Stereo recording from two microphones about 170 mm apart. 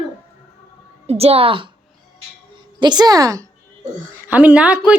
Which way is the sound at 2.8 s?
25° right (ahead or behind).